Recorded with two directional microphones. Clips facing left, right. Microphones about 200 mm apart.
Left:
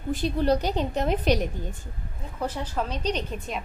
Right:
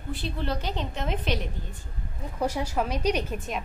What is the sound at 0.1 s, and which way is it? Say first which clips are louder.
A woman's voice: left 8 dB; 45° left (ahead or behind).